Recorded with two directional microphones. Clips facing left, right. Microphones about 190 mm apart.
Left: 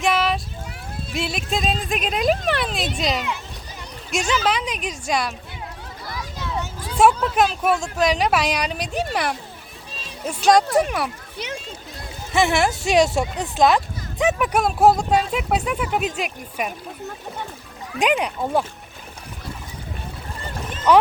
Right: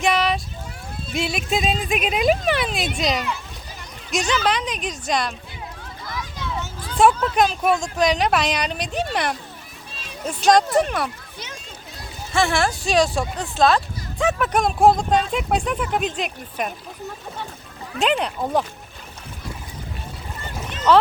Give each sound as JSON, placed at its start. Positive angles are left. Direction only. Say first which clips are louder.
{"t": 0.0, "sound": "child singing", "louder": "even", "side_deg": 0}
{"t": 1.1, "sound": "speech", "louder": "right 2 dB", "side_deg": 0}
{"t": 4.3, "sound": "speech", "louder": "even", "side_deg": 5}
{"t": 6.6, "sound": "vehicle", "louder": "even", "side_deg": 10}
{"t": 7.2, "sound": "speech", "louder": "even", "side_deg": 0}
{"t": 12.3, "sound": "speech", "louder": "left 2 dB", "side_deg": 20}
{"t": 18.0, "sound": "speech", "louder": "left 1 dB", "side_deg": 10}
{"t": 20.9, "sound": "speech", "louder": "even", "side_deg": 10}